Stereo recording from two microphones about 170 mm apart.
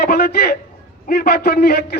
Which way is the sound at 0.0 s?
65° left (ahead or behind).